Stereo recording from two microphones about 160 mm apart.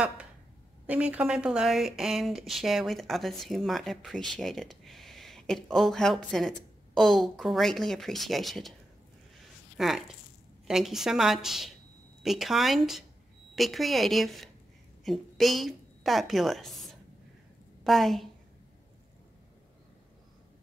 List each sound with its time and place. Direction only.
0.8 s speech: 10° right (ahead or behind)
9.8 s a woman's voice: centre (ahead or behind)